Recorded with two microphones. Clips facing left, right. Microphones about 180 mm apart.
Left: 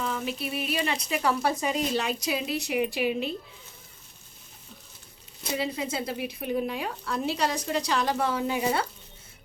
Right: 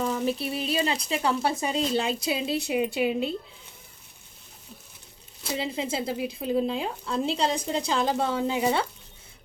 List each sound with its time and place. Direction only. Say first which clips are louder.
0.0 s speech: right 4 dB; 35° right (ahead or behind)
5.4 s speech: even; 25° right (ahead or behind)